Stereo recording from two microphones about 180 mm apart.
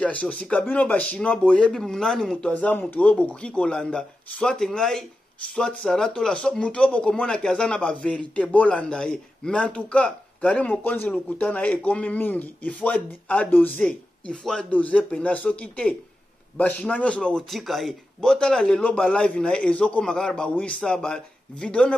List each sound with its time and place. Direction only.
0.0 s a man's voice: 5° left (ahead or behind)